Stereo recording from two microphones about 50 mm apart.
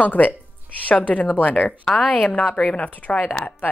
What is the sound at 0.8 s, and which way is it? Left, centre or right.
A woman's voice, left.